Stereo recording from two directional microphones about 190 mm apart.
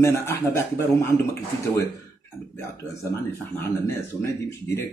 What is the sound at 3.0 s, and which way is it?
Speech, 10° left (ahead or behind).